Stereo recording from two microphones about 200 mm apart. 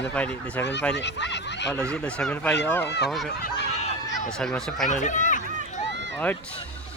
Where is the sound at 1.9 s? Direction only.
5° left (ahead or behind).